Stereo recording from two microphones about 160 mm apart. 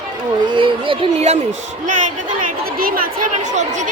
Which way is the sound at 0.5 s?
35° right (ahead or behind).